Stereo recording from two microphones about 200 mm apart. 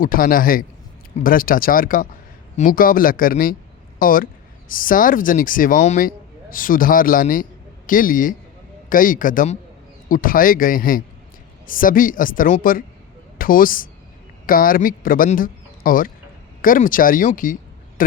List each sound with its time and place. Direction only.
0.0 s a man's voice: 45° left (ahead or behind)